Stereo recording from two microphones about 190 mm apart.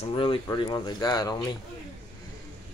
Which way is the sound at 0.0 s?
25° left (ahead or behind).